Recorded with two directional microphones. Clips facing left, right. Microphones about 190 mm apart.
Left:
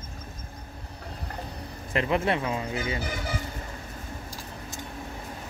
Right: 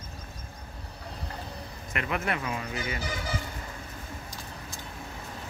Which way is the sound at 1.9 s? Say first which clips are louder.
Left 6 dB; 30° left (ahead or behind).